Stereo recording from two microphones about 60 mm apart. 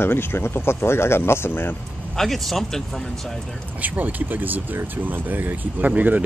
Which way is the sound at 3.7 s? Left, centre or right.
Right.